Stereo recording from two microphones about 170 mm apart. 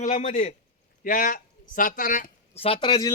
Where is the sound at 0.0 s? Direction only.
45° left (ahead or behind).